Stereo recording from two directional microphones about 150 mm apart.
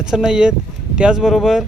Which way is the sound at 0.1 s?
5° right (ahead or behind).